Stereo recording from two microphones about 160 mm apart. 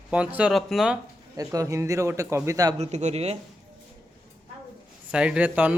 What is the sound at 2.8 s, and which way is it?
Speech, 45° right (ahead or behind).